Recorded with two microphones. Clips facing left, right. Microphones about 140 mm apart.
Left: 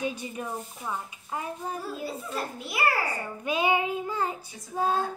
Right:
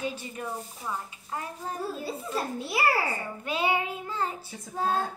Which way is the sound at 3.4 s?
15° left (ahead or behind).